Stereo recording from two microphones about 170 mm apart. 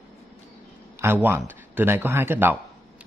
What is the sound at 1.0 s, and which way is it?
Speech, 10° right (ahead or behind).